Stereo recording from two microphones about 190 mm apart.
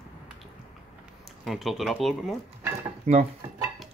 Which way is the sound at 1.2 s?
Centre (ahead or behind).